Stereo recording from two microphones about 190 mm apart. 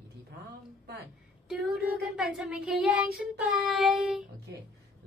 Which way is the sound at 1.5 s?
Centre (ahead or behind).